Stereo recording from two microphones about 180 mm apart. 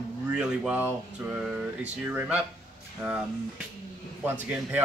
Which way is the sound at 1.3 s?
5° right (ahead or behind).